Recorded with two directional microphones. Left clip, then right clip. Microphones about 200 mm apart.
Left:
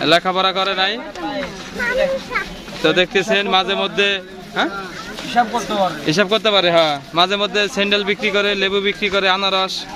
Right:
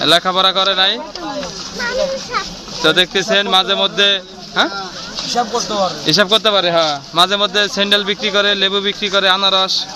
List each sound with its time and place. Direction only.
0.0 s a man's voice: 5° left (ahead or behind)
2.8 s a man's voice: 5° left (ahead or behind)
5.3 s speech: 15° right (ahead or behind)
6.1 s speech: 5° left (ahead or behind)